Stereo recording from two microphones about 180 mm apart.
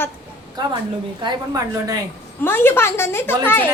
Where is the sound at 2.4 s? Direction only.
10° left (ahead or behind).